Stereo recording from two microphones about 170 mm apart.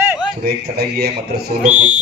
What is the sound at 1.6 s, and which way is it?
Music, 45° right (ahead or behind).